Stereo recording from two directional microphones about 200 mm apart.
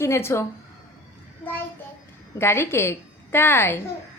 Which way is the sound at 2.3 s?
10° left (ahead or behind).